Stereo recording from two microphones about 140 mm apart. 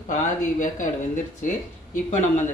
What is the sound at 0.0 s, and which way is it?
Speech, 65° left (ahead or behind).